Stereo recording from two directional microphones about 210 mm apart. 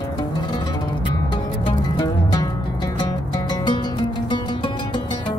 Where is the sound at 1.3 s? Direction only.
20° left (ahead or behind).